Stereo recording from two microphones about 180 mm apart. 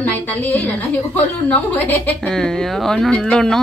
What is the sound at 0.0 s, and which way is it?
A woman's voice, 10° left (ahead or behind).